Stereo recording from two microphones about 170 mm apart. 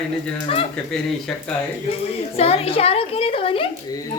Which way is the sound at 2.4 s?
35° left (ahead or behind).